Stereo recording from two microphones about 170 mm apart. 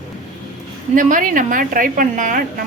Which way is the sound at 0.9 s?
55° right (ahead or behind).